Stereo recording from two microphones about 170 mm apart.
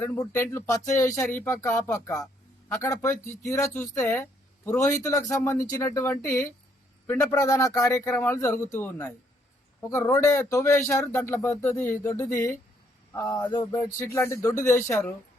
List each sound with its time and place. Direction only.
0.0 s speech: 10° left (ahead or behind)